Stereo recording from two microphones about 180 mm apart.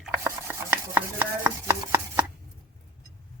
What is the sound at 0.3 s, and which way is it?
Chopping, 15° right (ahead or behind).